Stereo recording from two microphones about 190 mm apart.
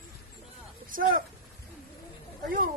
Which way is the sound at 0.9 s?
45° right (ahead or behind).